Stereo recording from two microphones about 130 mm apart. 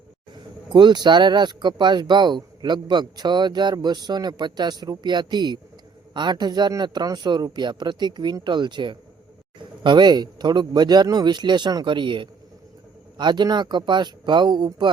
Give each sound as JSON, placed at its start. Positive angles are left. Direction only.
{"t": 0.7, "sound": "speech", "side_deg": -35}